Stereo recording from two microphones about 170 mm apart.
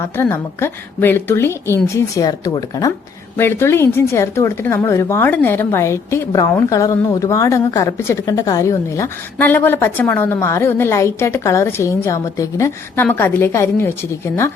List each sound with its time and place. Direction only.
0.0 s speech: 15° left (ahead or behind)